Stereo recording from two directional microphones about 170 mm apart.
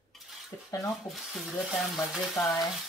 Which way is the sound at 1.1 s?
Centre (ahead or behind).